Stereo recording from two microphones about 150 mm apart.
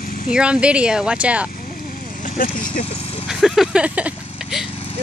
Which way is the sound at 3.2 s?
Centre (ahead or behind).